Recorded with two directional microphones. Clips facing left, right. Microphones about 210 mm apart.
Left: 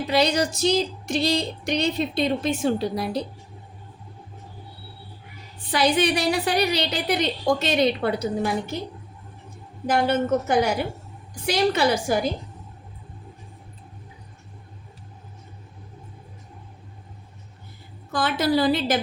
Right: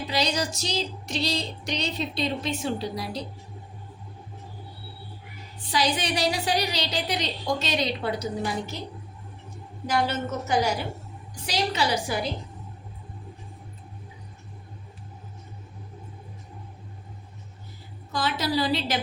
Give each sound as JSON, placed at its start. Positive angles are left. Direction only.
{"t": 0.1, "sound": "a woman's voice", "side_deg": 55}
{"t": 5.7, "sound": "a woman's voice", "side_deg": 55}
{"t": 9.8, "sound": "a woman's voice", "side_deg": 55}
{"t": 18.1, "sound": "a woman's voice", "side_deg": 55}